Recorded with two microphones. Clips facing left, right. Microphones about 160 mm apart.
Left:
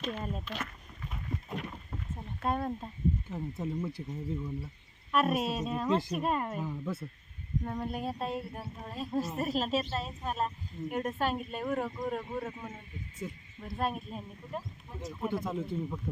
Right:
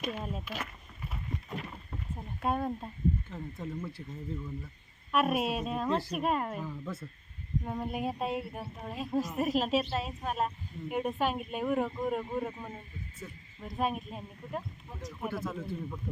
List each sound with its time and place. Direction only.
0.0 s speech: 5° right (ahead or behind)
1.1 s a sound: 5° right (ahead or behind)
2.1 s speech: 10° right (ahead or behind)
3.2 s speech: 15° left (ahead or behind)
5.1 s speech: 10° right (ahead or behind)
6.6 s speech: 15° left (ahead or behind)
7.6 s speech: 10° right (ahead or behind)
13.2 s speech: 15° left (ahead or behind)
13.6 s speech: 5° right (ahead or behind)
15.4 s speech: 15° left (ahead or behind)